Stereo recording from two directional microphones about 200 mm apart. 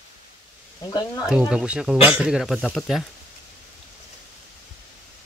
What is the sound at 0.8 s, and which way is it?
Speech, 15° left (ahead or behind).